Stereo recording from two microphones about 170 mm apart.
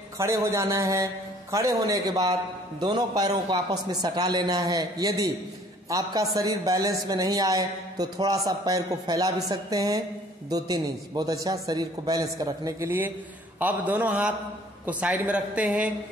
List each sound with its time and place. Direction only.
0.2 s a man's voice: 15° right (ahead or behind)